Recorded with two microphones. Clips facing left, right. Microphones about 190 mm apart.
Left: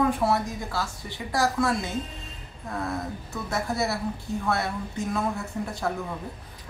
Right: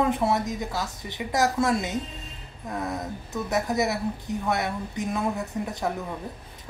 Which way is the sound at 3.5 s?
15° right (ahead or behind).